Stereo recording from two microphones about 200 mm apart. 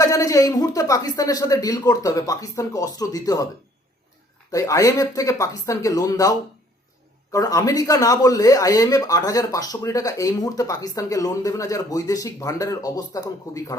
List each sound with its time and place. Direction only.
0.0 s a man's voice: 15° left (ahead or behind)
4.5 s a man's voice: 15° left (ahead or behind)